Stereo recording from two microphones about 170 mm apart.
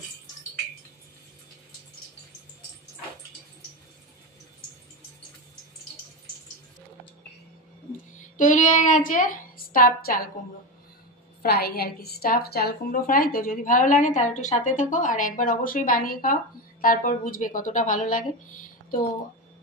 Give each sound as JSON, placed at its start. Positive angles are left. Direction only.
{"t": 8.4, "sound": "a woman's voice", "side_deg": 50}
{"t": 11.4, "sound": "a woman's voice", "side_deg": 65}